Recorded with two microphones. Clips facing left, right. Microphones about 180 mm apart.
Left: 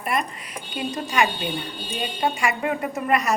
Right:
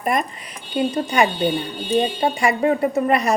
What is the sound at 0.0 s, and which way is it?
A woman's voice, 40° right (ahead or behind).